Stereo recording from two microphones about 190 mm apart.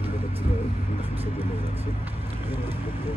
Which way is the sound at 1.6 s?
30° right (ahead or behind).